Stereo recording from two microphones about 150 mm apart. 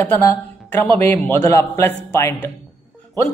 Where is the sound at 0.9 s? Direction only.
10° left (ahead or behind).